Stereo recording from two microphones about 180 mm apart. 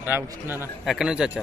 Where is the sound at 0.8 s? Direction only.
Centre (ahead or behind).